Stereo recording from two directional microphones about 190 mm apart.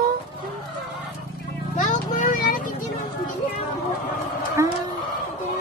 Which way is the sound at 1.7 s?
45° left (ahead or behind).